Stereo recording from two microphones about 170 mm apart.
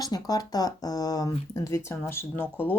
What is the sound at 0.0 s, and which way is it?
Speech, 20° left (ahead or behind).